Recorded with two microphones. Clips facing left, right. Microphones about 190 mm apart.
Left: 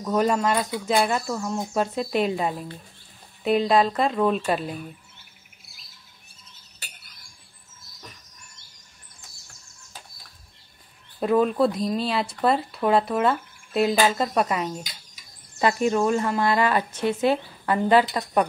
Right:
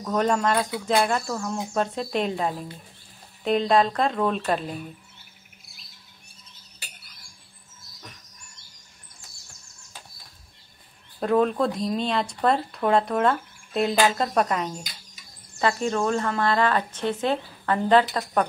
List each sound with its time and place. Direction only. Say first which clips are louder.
0.0 s speech: left 1 dB; 5° left (ahead or behind)
5.7 s squawk: right 1 dB; centre (ahead or behind)
11.1 s speech: left 1 dB; 5° left (ahead or behind)
15.6 s speech: left 3 dB; 15° left (ahead or behind)